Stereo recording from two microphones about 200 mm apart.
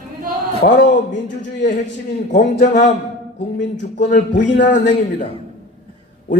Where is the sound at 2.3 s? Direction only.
40° left (ahead or behind).